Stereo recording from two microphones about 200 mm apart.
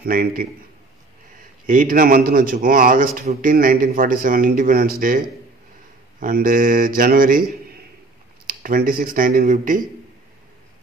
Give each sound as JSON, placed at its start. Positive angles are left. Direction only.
{"t": 0.0, "sound": "a man's voice", "side_deg": -50}
{"t": 1.7, "sound": "a man's voice", "side_deg": -45}